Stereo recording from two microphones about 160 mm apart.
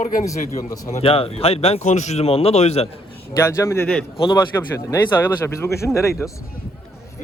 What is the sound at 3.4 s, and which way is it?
A man's voice, 15° left (ahead or behind).